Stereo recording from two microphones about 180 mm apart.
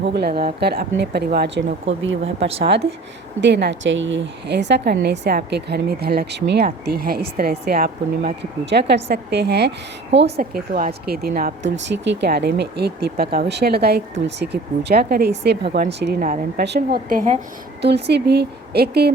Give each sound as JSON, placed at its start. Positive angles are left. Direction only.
{"t": 0.1, "sound": "speech", "side_deg": -65}
{"t": 3.4, "sound": "speech", "side_deg": -75}
{"t": 10.5, "sound": "speech", "side_deg": -55}
{"t": 11.6, "sound": "speech", "side_deg": -80}
{"t": 16.2, "sound": "a woman's voice", "side_deg": -50}
{"t": 16.6, "sound": "a woman's voice", "side_deg": -60}
{"t": 17.8, "sound": "speech", "side_deg": -70}